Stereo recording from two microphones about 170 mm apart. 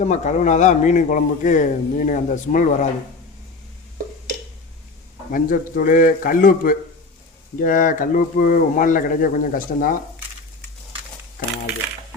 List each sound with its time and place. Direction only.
0.0 s speech: 45° left (ahead or behind)
5.3 s speech: 55° left (ahead or behind)